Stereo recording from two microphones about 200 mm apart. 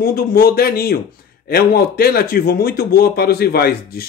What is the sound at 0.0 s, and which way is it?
Speech, 50° left (ahead or behind).